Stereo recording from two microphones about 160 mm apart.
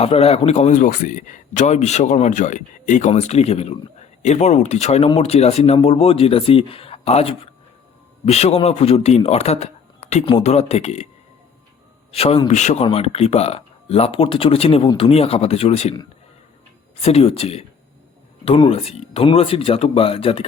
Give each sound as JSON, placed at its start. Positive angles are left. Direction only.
{"t": 0.0, "sound": "speech", "side_deg": 40}
{"t": 12.1, "sound": "speech", "side_deg": 40}
{"t": 17.0, "sound": "speech", "side_deg": 40}